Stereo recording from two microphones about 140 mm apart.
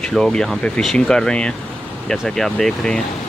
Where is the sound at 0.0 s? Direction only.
5° left (ahead or behind).